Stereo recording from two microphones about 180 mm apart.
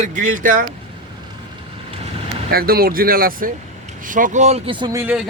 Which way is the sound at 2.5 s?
55° right (ahead or behind).